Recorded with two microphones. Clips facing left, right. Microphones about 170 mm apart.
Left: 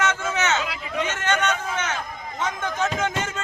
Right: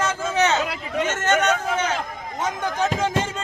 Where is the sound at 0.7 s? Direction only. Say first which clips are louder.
Right 3 dB; 50° right (ahead or behind).